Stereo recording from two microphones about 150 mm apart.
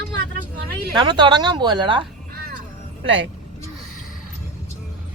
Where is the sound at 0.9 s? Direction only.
30° right (ahead or behind).